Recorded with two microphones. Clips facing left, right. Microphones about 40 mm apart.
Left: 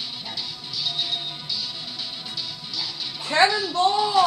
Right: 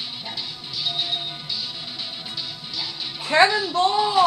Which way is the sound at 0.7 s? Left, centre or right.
Centre.